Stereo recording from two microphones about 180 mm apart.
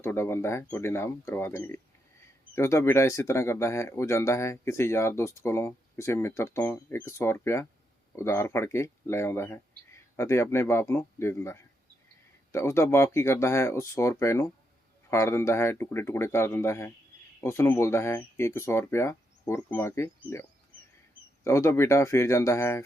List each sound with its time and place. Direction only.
0.0 s speech: 15° left (ahead or behind)
21.4 s speech: 15° left (ahead or behind)